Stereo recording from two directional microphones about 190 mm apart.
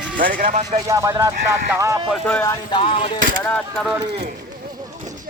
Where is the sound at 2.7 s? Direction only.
30° left (ahead or behind).